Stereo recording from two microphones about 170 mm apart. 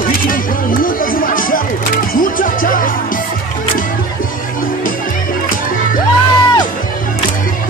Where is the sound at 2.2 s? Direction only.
55° left (ahead or behind).